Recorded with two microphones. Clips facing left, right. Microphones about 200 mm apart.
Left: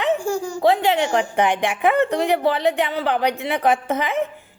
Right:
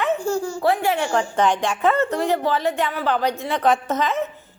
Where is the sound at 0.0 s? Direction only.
15° left (ahead or behind).